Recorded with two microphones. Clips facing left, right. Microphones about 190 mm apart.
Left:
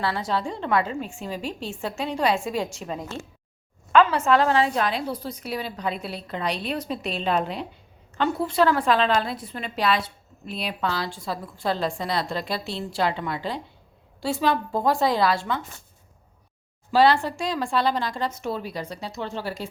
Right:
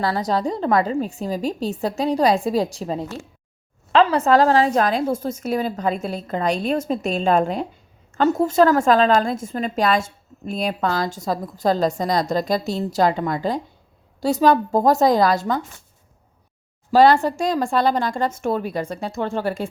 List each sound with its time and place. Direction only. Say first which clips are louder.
0.0 s a woman's voice: right 5 dB; 40° right (ahead or behind)
16.9 s a woman's voice: right 5 dB; 45° right (ahead or behind)